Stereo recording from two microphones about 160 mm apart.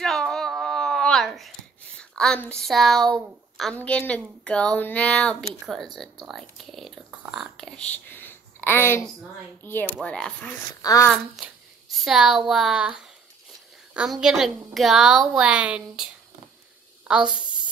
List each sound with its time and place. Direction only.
0.0 s a sound: 5° left (ahead or behind)
2.0 s a woman's voice: 5° left (ahead or behind)
10.8 s a child's voice: 20° left (ahead or behind)
11.1 s speech: 5° right (ahead or behind)
17.1 s speech: 5° right (ahead or behind)